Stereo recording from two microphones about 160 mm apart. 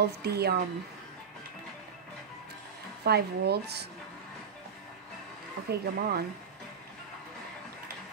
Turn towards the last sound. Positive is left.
turn(degrees=-75)  # may be behind; listen again after turning